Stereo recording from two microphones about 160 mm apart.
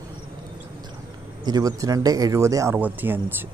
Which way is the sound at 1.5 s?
20° right (ahead or behind).